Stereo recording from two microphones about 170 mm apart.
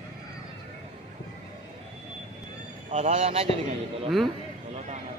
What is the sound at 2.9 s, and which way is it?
Speech, 40° right (ahead or behind).